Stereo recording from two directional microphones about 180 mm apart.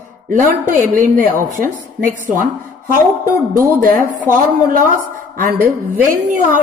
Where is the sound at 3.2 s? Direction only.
50° right (ahead or behind).